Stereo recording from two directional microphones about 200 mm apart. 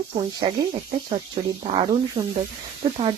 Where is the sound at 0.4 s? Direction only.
25° right (ahead or behind).